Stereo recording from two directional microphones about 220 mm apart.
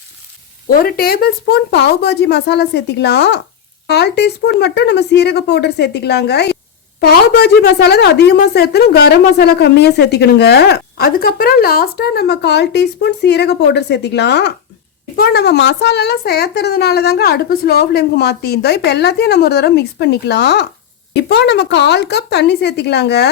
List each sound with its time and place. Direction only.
0.7 s a woman's voice: 40° left (ahead or behind)